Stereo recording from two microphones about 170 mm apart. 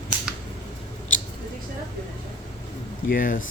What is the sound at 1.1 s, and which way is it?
Scissors, 50° left (ahead or behind).